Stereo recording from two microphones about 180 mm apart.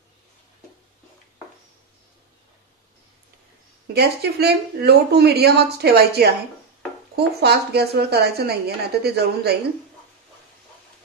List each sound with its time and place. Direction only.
3.8 s speech: 65° right (ahead or behind)